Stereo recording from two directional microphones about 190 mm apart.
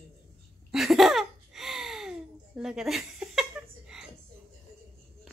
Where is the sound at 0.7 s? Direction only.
Centre (ahead or behind).